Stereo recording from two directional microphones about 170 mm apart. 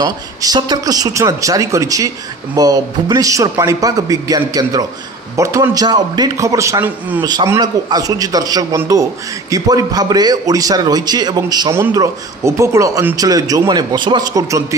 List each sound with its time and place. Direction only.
0.0 s a man's voice: 20° right (ahead or behind)